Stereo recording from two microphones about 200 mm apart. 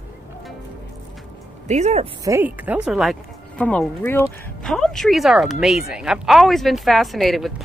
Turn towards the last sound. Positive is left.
turn(degrees=0)  # may be behind; listen again after turning